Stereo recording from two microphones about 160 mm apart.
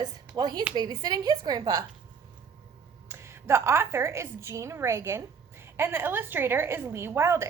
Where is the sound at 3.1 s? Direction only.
15° right (ahead or behind).